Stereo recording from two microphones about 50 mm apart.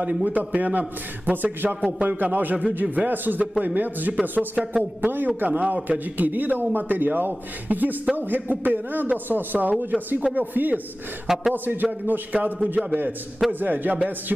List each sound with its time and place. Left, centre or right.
0.0 s a man's voice: right